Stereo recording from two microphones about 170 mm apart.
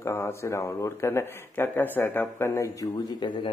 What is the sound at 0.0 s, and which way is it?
A man's voice, 15° left (ahead or behind).